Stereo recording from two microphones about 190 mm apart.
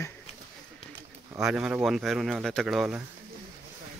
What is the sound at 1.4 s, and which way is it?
Speech, 5° right (ahead or behind).